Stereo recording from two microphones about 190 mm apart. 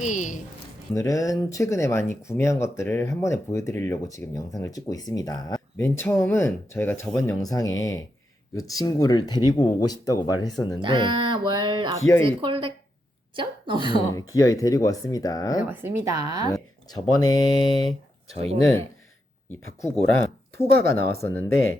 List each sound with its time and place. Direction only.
0.0 s a woman's voice: 40° left (ahead or behind)
0.9 s speech: 15° left (ahead or behind)
10.8 s speech: 25° right (ahead or behind)
11.9 s speech: 15° left (ahead or behind)
12.2 s a woman's voice: 25° right (ahead or behind)
14.1 s speech: 15° left (ahead or behind)
15.7 s a woman's voice: 10° right (ahead or behind)
16.5 s speech: 20° left (ahead or behind)
18.3 s speech: 30° right (ahead or behind)
20.6 s speech: 55° right (ahead or behind)
21.2 s speech: 10° left (ahead or behind)